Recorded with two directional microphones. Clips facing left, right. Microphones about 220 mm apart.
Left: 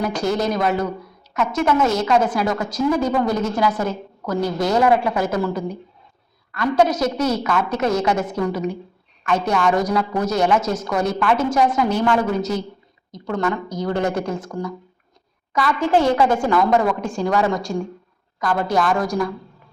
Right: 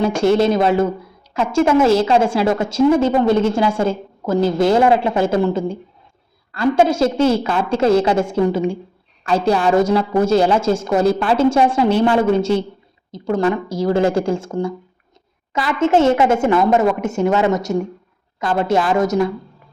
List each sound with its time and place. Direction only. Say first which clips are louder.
0.0 s a woman's voice: right 6 dB; 25° right (ahead or behind)